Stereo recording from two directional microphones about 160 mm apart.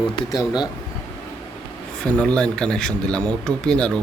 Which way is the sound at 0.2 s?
25° left (ahead or behind).